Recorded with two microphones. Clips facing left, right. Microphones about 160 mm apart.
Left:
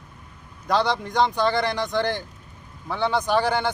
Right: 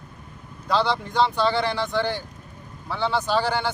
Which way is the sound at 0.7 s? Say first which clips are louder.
Left 1 dB; 15° left (ahead or behind).